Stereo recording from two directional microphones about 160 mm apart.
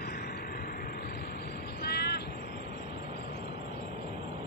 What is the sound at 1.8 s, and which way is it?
Crow, 85° left.